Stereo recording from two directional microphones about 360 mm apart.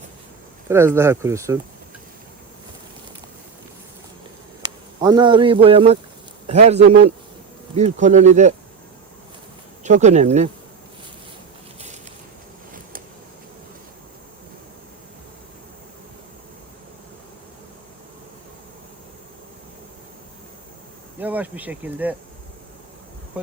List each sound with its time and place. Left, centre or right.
0.7 s a man's voice: centre
4.9 s a man's voice: centre
9.8 s speech: centre
21.2 s insect: centre